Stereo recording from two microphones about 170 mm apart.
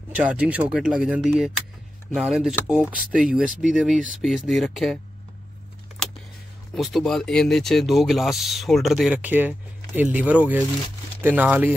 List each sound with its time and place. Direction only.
0.1 s speech: 5° right (ahead or behind)
2.9 s speech: 55° right (ahead or behind)
3.2 s speech: 5° right (ahead or behind)
6.7 s speech: centre (ahead or behind)